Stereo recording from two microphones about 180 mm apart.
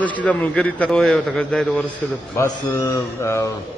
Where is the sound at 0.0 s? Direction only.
10° left (ahead or behind).